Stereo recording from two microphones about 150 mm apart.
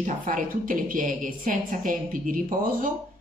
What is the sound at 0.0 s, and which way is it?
A woman's voice, 55° right (ahead or behind).